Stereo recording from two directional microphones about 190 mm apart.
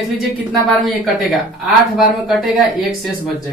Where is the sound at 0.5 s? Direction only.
Centre (ahead or behind).